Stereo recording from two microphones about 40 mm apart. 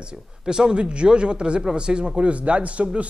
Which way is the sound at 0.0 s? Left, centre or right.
Right.